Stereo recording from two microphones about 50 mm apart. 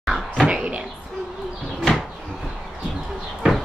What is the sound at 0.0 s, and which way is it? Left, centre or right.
Cupboard open or close, centre.